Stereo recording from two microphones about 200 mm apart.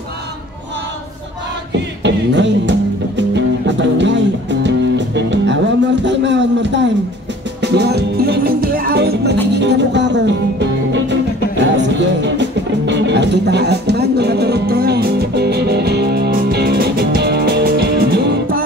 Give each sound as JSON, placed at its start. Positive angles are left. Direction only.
{"t": 1.7, "sound": "music", "side_deg": -65}
{"t": 6.0, "sound": "a sound", "side_deg": -65}
{"t": 7.6, "sound": "music", "side_deg": -55}